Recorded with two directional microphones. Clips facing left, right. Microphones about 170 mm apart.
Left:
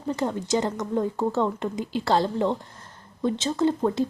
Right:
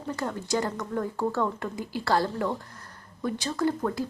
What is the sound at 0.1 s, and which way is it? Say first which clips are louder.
A woman's voice: left 4 dB; 20° left (ahead or behind).